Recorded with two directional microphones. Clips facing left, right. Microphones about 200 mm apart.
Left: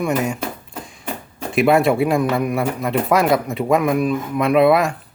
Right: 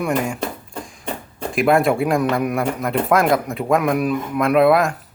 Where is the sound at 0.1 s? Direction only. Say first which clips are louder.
Left 1 dB; 5° left (ahead or behind).